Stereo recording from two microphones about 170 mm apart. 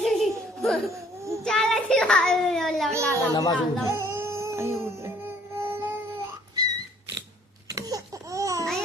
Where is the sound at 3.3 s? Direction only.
20° left (ahead or behind).